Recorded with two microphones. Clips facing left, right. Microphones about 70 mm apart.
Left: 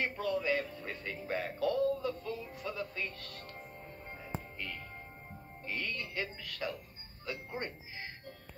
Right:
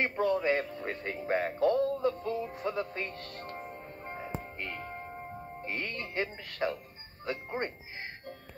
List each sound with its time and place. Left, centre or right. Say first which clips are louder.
0.0 s speech: right 6 dB; right